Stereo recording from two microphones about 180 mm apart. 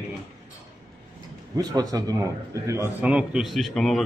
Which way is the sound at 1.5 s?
20° right (ahead or behind).